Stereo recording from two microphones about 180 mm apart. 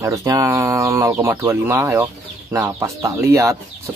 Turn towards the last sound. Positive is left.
turn(degrees=-15)  # may be behind; listen again after turning